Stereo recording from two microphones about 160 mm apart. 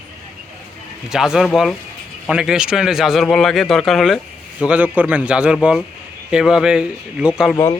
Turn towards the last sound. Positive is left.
turn(degrees=-5)  # may be behind; listen again after turning